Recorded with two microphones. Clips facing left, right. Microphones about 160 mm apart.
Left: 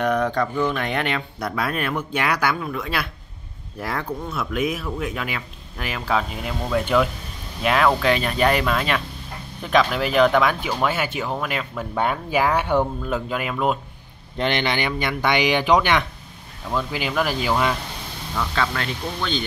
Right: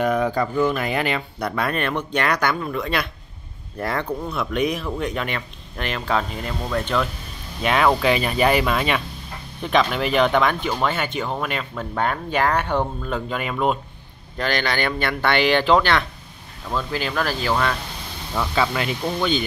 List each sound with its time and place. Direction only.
0.0 s speech: 5° right (ahead or behind)
7.6 s speech: centre (ahead or behind)
14.3 s speech: 25° left (ahead or behind)
18.3 s speech: 10° right (ahead or behind)